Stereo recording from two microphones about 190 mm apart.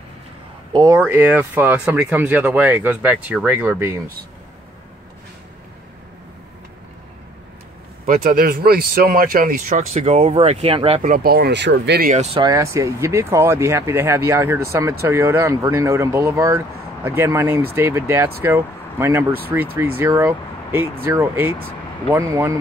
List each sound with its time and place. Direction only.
0.7 s speech: 15° right (ahead or behind)
8.1 s speech: 50° right (ahead or behind)
11.2 s speech: 55° right (ahead or behind)
12.4 s speech: 20° right (ahead or behind)